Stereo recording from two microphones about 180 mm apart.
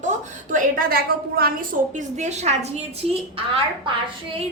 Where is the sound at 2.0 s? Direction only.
40° right (ahead or behind).